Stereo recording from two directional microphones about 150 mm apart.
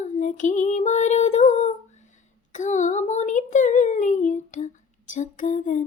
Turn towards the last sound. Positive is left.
turn(degrees=55)  # may be behind; listen again after turning